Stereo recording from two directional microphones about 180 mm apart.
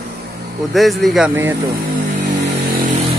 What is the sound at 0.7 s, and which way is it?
Speech, centre (ahead or behind).